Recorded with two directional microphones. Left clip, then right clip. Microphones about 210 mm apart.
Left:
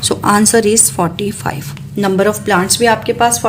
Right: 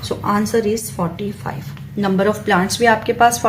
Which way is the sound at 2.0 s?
25° left (ahead or behind).